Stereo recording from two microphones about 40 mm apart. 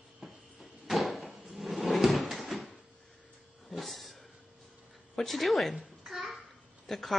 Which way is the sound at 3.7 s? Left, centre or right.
Centre.